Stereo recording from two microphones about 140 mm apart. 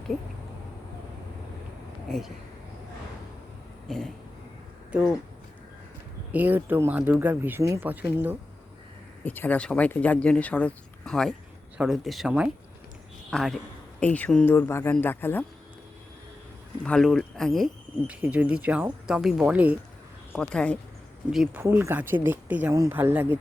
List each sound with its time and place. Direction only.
2.0 s speech: centre (ahead or behind)
3.8 s speech: 5° left (ahead or behind)
4.9 s speech: 10° right (ahead or behind)
6.3 s speech: 10° right (ahead or behind)
9.2 s speech: 15° left (ahead or behind)
13.3 s speech: centre (ahead or behind)
16.8 s speech: 5° left (ahead or behind)
18.1 s speech: 10° right (ahead or behind)
20.3 s speech: 5° left (ahead or behind)
21.6 s speech: 15° right (ahead or behind)